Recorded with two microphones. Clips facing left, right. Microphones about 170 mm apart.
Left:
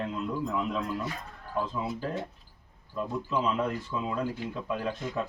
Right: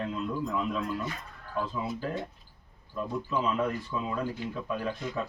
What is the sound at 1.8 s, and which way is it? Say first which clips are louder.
Speech: even; 25° left (ahead or behind).